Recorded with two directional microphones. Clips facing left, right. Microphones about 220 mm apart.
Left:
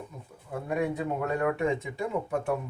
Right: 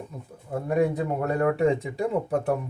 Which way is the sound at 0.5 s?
40° right (ahead or behind).